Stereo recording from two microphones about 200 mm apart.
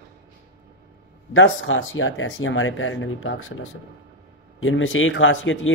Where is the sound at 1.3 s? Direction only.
80° left.